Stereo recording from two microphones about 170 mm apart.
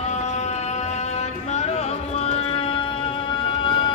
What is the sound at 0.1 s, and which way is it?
Music, 40° left (ahead or behind).